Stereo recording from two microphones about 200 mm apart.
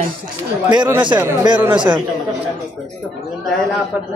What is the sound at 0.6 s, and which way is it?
Speech, 20° right (ahead or behind).